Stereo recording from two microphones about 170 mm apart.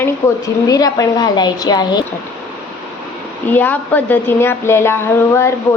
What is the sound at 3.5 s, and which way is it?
Speech, 10° left (ahead or behind).